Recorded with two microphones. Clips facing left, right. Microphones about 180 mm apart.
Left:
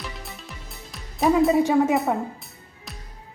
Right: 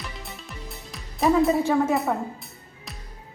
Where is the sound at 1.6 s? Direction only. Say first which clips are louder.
Left 2 dB; 15° left (ahead or behind).